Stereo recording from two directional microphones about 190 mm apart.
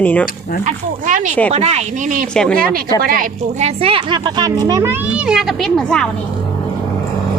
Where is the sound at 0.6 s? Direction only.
40° right (ahead or behind).